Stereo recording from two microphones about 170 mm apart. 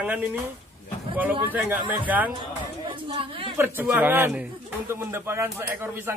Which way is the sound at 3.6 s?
10° right (ahead or behind).